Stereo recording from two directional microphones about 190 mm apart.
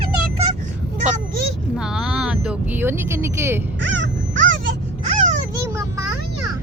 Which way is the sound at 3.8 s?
80° right.